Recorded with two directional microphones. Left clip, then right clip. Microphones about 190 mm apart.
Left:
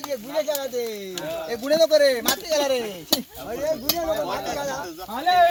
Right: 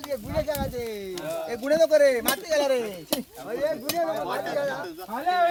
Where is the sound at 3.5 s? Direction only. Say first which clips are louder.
Left 1 dB; 60° left (ahead or behind).